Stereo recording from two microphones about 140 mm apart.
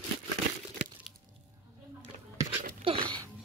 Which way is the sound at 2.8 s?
35° right (ahead or behind).